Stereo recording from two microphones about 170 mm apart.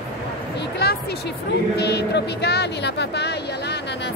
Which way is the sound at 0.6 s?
70° left (ahead or behind).